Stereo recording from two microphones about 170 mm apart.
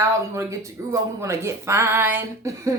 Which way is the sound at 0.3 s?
15° right (ahead or behind).